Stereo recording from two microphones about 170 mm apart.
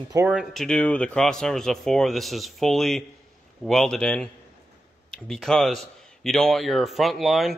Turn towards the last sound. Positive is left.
turn(degrees=0)  # may be behind; listen again after turning